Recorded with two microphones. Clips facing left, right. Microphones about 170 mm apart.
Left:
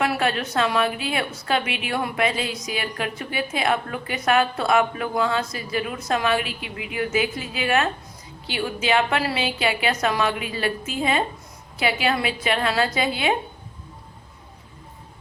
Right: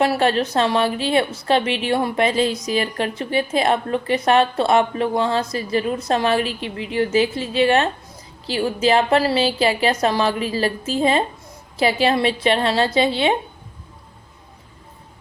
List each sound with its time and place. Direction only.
0.0 s a woman's voice: 30° right (ahead or behind)